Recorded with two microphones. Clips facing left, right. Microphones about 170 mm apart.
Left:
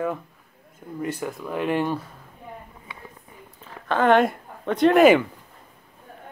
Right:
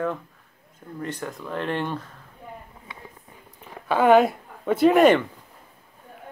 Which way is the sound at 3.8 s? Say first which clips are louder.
Right 2 dB; 10° right (ahead or behind).